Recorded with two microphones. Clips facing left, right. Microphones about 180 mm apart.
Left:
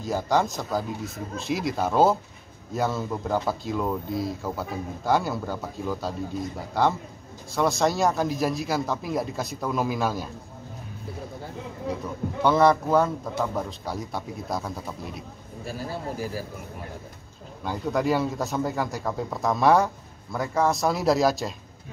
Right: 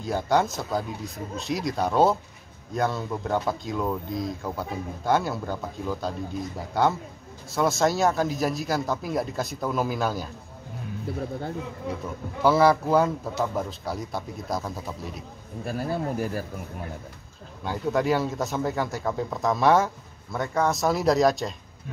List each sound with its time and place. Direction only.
0.0 s speech: centre (ahead or behind)
11.9 s speech: centre (ahead or behind)
15.6 s speech: 55° right (ahead or behind)
17.6 s speech: centre (ahead or behind)